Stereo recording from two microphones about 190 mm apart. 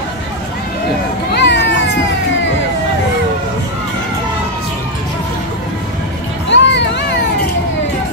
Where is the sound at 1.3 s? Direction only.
65° left (ahead or behind).